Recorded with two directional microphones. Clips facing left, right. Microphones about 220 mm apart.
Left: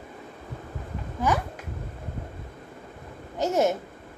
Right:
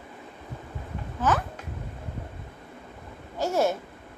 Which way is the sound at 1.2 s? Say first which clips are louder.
Even; 10° left (ahead or behind).